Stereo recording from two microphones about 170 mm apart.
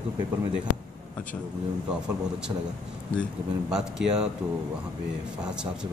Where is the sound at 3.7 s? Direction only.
5° right (ahead or behind).